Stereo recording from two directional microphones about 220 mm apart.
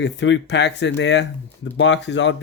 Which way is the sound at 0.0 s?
55° left (ahead or behind).